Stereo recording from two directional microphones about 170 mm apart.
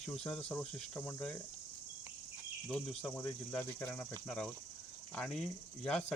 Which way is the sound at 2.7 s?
5° left (ahead or behind).